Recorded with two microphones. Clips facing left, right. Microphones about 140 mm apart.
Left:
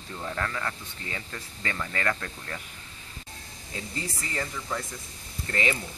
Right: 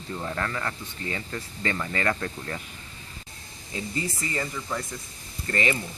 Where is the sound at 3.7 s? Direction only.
Centre (ahead or behind).